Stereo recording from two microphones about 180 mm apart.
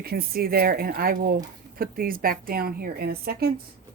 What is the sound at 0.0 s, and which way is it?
A woman's voice, 60° right (ahead or behind).